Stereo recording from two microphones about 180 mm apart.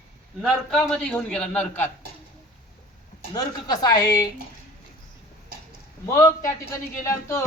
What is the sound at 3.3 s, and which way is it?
Speech, 20° left (ahead or behind).